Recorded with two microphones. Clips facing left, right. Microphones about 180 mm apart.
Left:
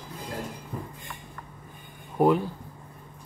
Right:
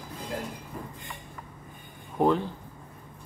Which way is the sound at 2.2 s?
10° left (ahead or behind).